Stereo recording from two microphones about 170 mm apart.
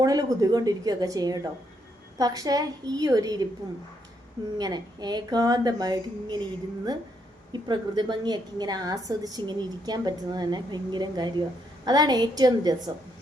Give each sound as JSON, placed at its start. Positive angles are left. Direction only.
{"t": 0.0, "sound": "a woman's voice", "side_deg": -20}
{"t": 4.5, "sound": "a woman's voice", "side_deg": -25}